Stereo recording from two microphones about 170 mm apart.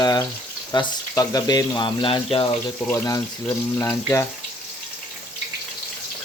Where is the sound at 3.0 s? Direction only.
20° left (ahead or behind).